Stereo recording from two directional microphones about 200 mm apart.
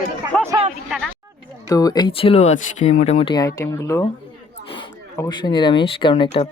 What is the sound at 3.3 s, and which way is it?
Speech, 15° left (ahead or behind).